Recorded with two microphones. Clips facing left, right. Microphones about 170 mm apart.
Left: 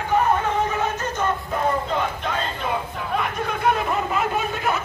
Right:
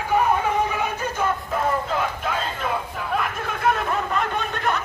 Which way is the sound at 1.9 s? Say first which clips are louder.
Even; 5° right (ahead or behind).